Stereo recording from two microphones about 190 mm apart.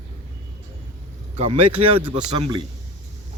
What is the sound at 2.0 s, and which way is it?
Speech, 25° right (ahead or behind).